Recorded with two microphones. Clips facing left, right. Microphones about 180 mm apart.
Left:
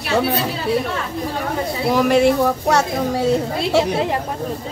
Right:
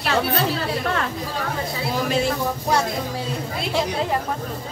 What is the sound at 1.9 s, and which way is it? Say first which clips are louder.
A woman's voice: left 9 dB; 65° left (ahead or behind).